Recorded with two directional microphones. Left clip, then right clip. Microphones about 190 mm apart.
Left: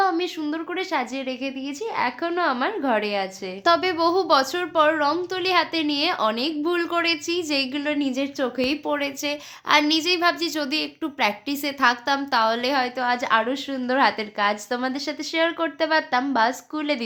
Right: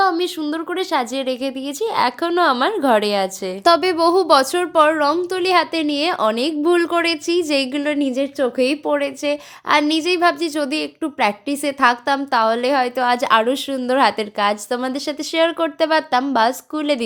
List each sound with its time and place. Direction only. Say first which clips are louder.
0.0 s a woman's voice: right 5 dB; 30° right (ahead or behind)